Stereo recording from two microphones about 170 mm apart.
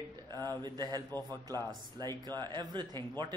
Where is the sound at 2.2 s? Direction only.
25° right (ahead or behind).